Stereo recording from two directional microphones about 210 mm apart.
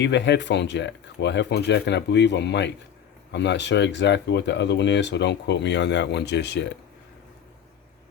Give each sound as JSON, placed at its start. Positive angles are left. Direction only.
{"t": 0.0, "sound": "speech", "side_deg": 55}